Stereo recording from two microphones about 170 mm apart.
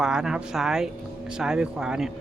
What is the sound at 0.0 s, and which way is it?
Speech, 5° right (ahead or behind).